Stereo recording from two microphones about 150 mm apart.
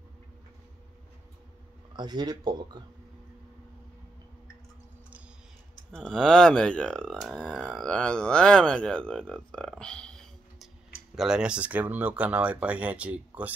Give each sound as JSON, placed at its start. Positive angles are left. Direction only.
{"t": 2.0, "sound": "speech", "side_deg": -30}
{"t": 5.9, "sound": "speech", "side_deg": 5}